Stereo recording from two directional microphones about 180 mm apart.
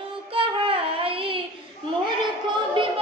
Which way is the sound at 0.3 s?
30° right (ahead or behind).